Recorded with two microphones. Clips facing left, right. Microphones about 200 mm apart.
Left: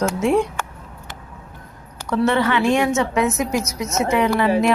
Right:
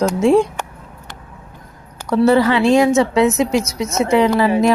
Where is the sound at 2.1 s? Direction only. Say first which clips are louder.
Right 5 dB; 35° right (ahead or behind).